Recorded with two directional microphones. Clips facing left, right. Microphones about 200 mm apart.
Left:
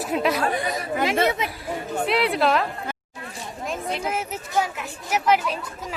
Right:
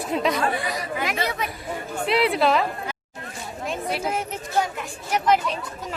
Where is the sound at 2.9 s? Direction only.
50° left (ahead or behind).